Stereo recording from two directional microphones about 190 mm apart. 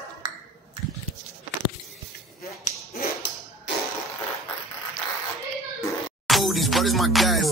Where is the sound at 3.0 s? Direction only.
60° left (ahead or behind).